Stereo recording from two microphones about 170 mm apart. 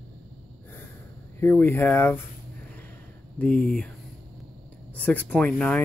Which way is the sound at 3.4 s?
5° left (ahead or behind).